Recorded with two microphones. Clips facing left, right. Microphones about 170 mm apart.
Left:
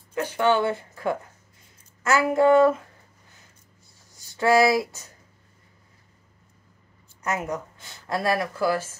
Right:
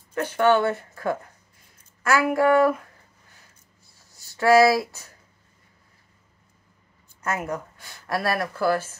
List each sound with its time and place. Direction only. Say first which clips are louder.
0.1 s speech: right 2 dB; 15° left (ahead or behind)
2.0 s a sound: left 1 dB; 20° left (ahead or behind)
4.1 s speech: right 2 dB; 20° left (ahead or behind)
7.2 s speech: even; 20° left (ahead or behind)